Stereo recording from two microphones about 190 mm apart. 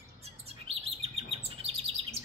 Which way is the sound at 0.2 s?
30° right (ahead or behind).